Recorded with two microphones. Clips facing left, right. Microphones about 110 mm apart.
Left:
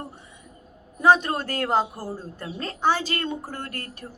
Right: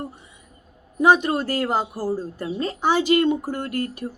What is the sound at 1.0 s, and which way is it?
A woman's voice, 15° right (ahead or behind).